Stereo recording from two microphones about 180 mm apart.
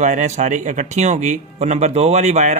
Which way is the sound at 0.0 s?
40° right (ahead or behind).